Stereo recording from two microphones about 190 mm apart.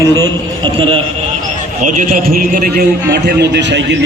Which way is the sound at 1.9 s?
45° right (ahead or behind).